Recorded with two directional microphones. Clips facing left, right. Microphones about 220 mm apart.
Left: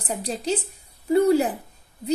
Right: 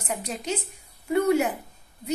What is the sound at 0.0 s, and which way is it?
Speech, 35° left (ahead or behind).